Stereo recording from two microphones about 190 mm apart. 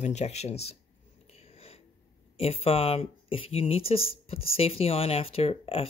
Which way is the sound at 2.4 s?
30° left (ahead or behind).